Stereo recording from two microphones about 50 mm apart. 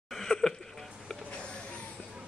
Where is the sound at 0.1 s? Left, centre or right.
Centre.